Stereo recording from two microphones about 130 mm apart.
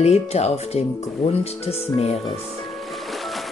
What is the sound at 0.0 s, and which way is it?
Speech, 55° left (ahead or behind).